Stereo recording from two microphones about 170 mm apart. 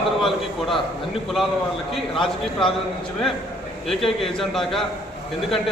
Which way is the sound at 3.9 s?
Centre (ahead or behind).